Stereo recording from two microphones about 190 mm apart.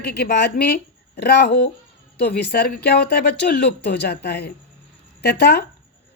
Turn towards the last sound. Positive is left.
turn(degrees=60)  # may be behind; listen again after turning